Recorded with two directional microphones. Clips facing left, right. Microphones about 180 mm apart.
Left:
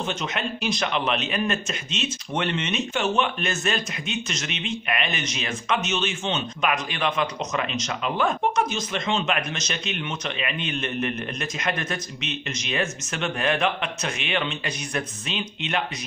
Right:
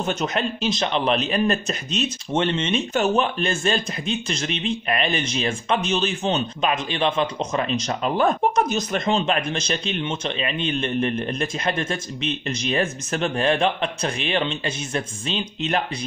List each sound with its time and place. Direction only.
0.0 s speech: 40° right (ahead or behind)
2.3 s speech: 25° right (ahead or behind)